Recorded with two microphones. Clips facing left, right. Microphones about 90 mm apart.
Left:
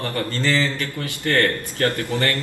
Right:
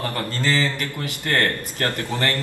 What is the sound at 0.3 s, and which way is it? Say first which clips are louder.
A man's voice: left 1 dB; 15° right (ahead or behind).